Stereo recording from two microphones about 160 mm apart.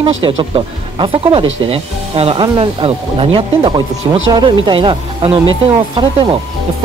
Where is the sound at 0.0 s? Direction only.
30° right (ahead or behind).